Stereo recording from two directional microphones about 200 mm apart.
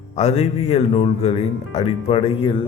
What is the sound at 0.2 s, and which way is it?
Speech, 35° left (ahead or behind).